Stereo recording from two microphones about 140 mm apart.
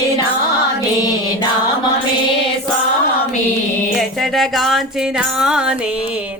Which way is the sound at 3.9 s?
Centre (ahead or behind).